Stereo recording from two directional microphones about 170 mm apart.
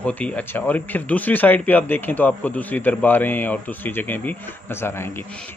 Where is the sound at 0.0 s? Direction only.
10° left (ahead or behind).